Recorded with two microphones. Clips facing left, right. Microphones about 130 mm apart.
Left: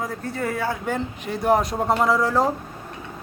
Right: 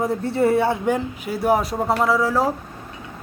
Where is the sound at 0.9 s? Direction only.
10° right (ahead or behind).